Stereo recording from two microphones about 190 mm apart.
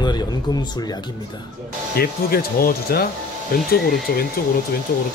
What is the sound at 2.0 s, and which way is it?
Speech, 55° left (ahead or behind).